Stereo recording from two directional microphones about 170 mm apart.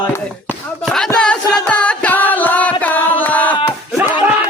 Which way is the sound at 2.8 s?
10° left (ahead or behind).